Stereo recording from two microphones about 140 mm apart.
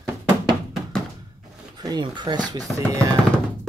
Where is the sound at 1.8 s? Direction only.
30° right (ahead or behind).